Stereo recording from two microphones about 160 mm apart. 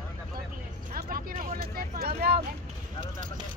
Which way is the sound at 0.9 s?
65° right (ahead or behind).